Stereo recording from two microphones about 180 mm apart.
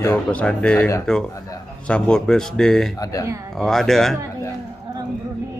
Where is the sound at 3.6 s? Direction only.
Centre (ahead or behind).